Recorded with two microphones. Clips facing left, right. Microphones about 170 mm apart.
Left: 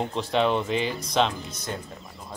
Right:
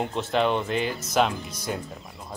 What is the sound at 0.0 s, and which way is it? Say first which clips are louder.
Speech: even; centre (ahead or behind).